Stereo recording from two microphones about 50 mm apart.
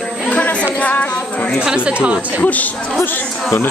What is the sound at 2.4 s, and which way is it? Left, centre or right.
Speech, left.